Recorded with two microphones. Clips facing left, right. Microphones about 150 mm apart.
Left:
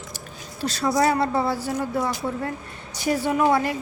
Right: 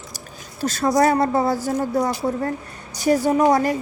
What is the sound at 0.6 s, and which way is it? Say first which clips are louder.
Speech: right 4 dB; 45° right (ahead or behind).